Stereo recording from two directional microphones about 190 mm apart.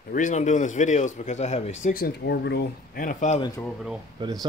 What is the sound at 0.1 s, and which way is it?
A man's voice, 40° left (ahead or behind).